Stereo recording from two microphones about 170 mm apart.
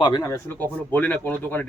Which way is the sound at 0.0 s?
20° left (ahead or behind).